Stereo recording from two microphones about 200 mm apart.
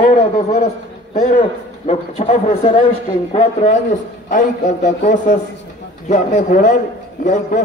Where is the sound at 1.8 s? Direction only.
30° left (ahead or behind).